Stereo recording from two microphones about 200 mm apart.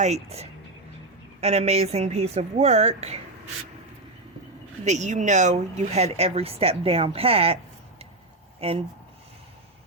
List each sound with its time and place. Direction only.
0.0 s speech: 30° right (ahead or behind)
4.9 s speech: 35° right (ahead or behind)